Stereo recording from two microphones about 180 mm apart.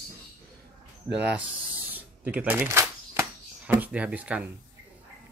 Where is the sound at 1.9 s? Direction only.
10° right (ahead or behind).